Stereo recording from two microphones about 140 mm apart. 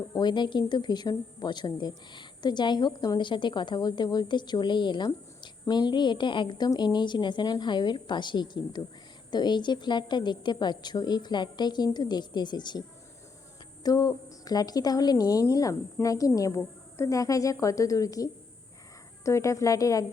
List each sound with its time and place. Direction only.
0.1 s a woman's voice: 30° left (ahead or behind)
13.8 s a woman's voice: 25° left (ahead or behind)